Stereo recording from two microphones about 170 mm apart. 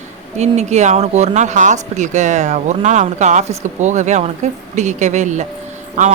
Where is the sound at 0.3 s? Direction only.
40° right (ahead or behind).